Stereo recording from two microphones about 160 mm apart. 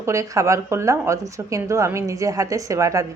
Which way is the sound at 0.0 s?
20° right (ahead or behind).